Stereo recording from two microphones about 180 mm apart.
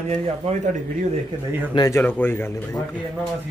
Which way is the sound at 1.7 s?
20° left (ahead or behind).